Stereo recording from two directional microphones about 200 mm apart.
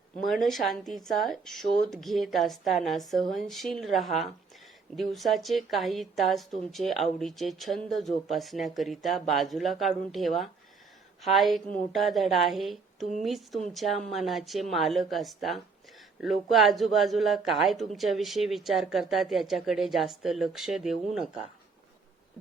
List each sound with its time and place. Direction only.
0.3 s a woman's voice: centre (ahead or behind)